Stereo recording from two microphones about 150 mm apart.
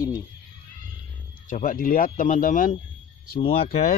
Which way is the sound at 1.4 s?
65° left (ahead or behind).